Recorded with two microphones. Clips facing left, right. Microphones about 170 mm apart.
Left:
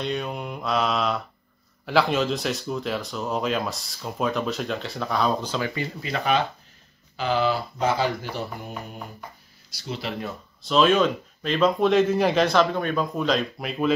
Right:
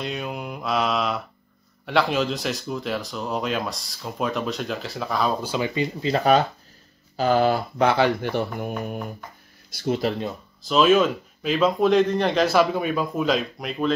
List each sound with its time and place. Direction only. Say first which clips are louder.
0.0 s speech: left 1 dB; centre (ahead or behind)
5.6 s speech: right 4 dB; 20° right (ahead or behind)
6.1 s speech: right 4 dB; 40° right (ahead or behind)
10.6 s speech: right 2 dB; centre (ahead or behind)